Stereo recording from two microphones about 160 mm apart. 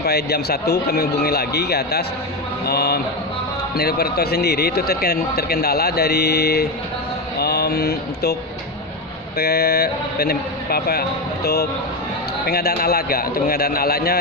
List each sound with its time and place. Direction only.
0.0 s a man's voice: 80° left
2.6 s a sound: 80° left
3.7 s speech: 75° left (ahead or behind)
7.3 s mantra: 80° left
9.4 s speech: 80° left